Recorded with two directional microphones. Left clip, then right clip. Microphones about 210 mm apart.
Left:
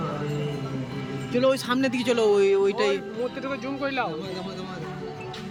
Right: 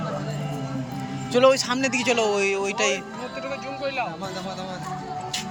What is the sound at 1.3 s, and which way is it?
Speech, 5° left (ahead or behind).